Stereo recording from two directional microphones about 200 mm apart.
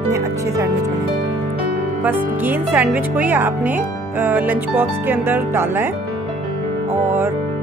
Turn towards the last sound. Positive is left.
turn(degrees=-10)  # may be behind; listen again after turning